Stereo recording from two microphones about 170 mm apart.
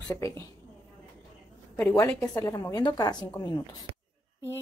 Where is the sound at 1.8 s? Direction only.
15° left (ahead or behind).